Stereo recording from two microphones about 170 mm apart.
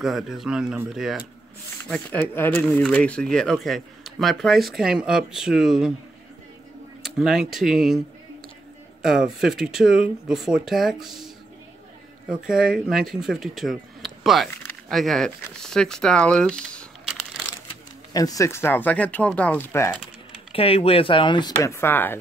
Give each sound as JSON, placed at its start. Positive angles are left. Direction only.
{"t": 0.0, "sound": "speech", "side_deg": 0}
{"t": 1.9, "sound": "speech", "side_deg": 10}
{"t": 7.0, "sound": "speech", "side_deg": 0}
{"t": 9.0, "sound": "speech", "side_deg": -5}
{"t": 18.1, "sound": "speech", "side_deg": 20}
{"t": 20.5, "sound": "speech", "side_deg": 35}